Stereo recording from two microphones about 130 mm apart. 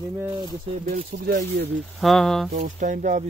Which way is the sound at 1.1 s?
55° right (ahead or behind).